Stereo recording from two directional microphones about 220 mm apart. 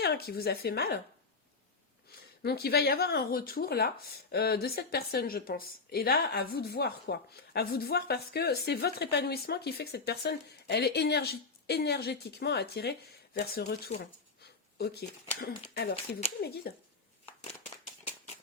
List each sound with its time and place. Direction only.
0.0 s speech: 45° left (ahead or behind)
2.4 s speech: 45° left (ahead or behind)